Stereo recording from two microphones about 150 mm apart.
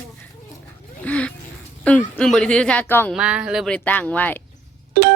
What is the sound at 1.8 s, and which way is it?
A woman's voice, 10° left (ahead or behind).